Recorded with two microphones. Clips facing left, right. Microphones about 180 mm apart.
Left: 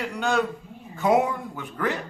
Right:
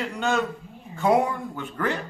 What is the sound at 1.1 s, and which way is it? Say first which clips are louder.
Speech: even; 15° left (ahead or behind).